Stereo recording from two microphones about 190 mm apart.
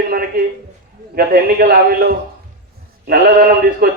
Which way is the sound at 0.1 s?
50° right (ahead or behind).